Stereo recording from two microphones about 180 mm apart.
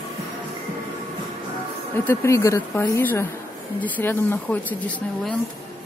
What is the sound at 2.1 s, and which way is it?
Speech, 15° left (ahead or behind).